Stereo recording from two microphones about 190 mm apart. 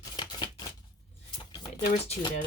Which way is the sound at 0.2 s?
25° left (ahead or behind).